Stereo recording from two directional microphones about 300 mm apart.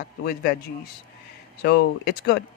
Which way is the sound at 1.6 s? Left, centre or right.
Left.